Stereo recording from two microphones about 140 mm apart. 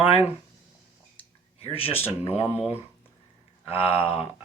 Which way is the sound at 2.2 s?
10° right (ahead or behind).